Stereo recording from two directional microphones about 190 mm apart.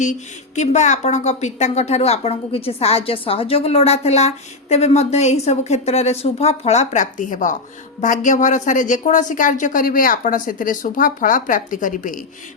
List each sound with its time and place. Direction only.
0.0 s speech: 40° left (ahead or behind)